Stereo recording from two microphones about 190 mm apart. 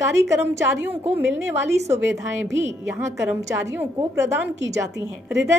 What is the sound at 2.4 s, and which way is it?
Speech, 70° right (ahead or behind).